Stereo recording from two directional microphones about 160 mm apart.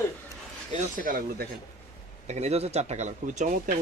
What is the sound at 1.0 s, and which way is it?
Speech, 60° right (ahead or behind).